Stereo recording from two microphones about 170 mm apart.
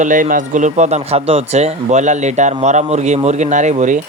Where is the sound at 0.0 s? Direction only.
50° right (ahead or behind).